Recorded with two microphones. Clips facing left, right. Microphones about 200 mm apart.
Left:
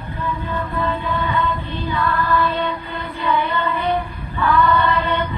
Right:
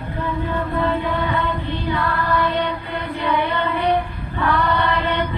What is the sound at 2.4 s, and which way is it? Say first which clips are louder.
Music: even; 25° right (ahead or behind).